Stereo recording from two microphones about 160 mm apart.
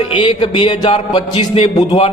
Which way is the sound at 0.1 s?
30° left (ahead or behind).